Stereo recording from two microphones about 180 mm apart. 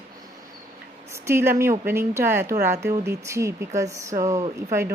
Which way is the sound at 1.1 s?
15° right (ahead or behind).